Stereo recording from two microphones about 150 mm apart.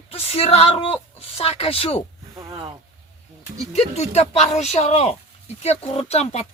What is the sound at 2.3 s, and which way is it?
Speech, 25° right (ahead or behind).